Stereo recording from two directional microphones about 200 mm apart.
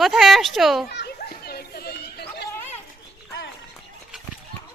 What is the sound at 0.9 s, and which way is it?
Children playing, 55° left (ahead or behind).